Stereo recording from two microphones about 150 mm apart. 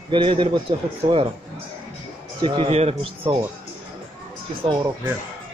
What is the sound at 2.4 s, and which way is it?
Speech, 35° right (ahead or behind).